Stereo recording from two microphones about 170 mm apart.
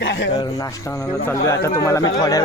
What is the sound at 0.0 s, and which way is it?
Speech, 90° left.